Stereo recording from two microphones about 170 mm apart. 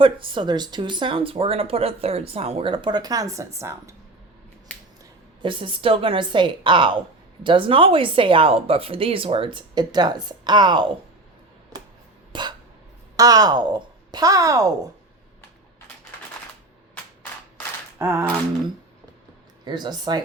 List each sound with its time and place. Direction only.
0.0 s speech: 30° right (ahead or behind)
5.4 s a woman's voice: 30° right (ahead or behind)
12.3 s cough: 25° right (ahead or behind)
13.1 s speech: 20° right (ahead or behind)
18.0 s a sound: 15° right (ahead or behind)
19.6 s speech: 25° right (ahead or behind)